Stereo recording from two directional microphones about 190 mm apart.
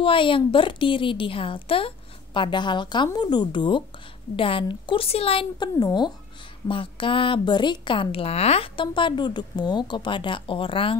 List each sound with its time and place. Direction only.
0.0 s speech: 25° left (ahead or behind)